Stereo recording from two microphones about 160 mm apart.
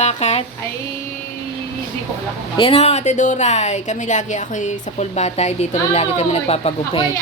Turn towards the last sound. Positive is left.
turn(degrees=40)  # may be behind; listen again after turning